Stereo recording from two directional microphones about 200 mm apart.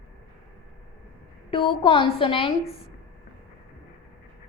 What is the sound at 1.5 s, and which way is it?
A woman's voice, 25° left (ahead or behind).